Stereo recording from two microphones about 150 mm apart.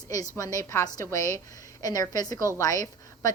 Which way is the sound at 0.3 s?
20° left (ahead or behind).